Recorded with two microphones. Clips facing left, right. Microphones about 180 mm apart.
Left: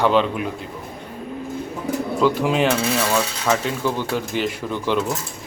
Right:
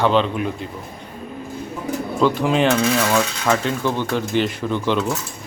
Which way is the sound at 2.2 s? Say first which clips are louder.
Right 1 dB; 5° left (ahead or behind).